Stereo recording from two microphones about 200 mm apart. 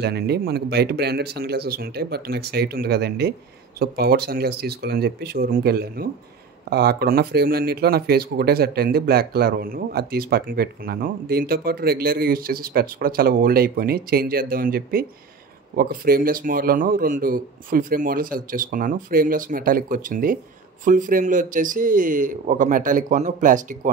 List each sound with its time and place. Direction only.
0.0 s speech: 55° right (ahead or behind)